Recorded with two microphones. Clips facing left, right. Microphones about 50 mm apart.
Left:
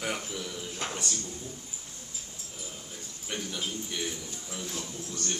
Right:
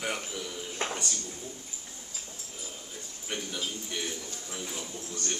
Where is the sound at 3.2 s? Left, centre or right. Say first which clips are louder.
Even; centre.